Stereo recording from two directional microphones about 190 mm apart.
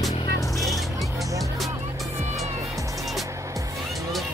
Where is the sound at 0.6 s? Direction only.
Centre (ahead or behind).